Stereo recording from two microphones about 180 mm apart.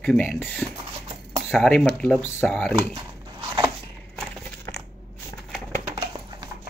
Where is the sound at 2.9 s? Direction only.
30° right (ahead or behind).